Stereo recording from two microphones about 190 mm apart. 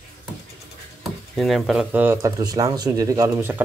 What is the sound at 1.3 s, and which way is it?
Speech, centre (ahead or behind).